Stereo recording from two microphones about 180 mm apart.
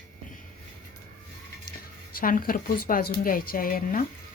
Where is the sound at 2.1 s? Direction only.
50° left (ahead or behind).